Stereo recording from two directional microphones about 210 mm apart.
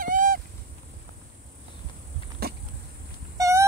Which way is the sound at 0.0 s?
40° right (ahead or behind).